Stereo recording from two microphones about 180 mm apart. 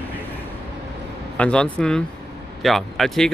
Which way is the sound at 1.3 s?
5° left (ahead or behind).